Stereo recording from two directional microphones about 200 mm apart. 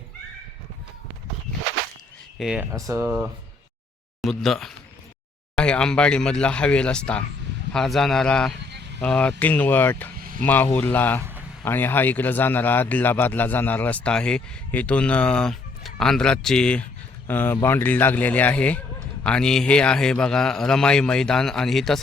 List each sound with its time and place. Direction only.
2.4 s a man's voice: 5° right (ahead or behind)
2.7 s speech: 15° right (ahead or behind)
4.2 s a man's voice: centre (ahead or behind)
8.7 s vehicle: 55° right (ahead or behind)
9.0 s speech: 5° left (ahead or behind)
10.2 s vehicle: 45° right (ahead or behind)
10.4 s a man's voice: 10° left (ahead or behind)